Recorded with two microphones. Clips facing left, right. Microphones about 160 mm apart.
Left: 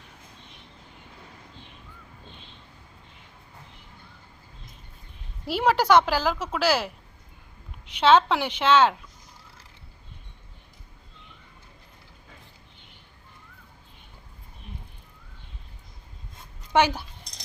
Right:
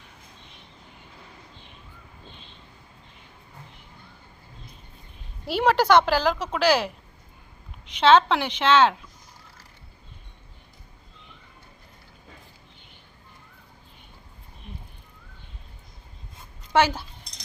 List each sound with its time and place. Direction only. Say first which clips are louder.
5.5 s a woman's voice: right 1 dB; 5° left (ahead or behind)
16.7 s a woman's voice: even; 15° left (ahead or behind)